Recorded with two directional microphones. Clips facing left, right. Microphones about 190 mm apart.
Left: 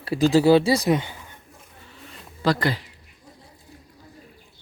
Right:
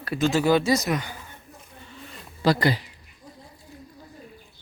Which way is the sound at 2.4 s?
5° right (ahead or behind).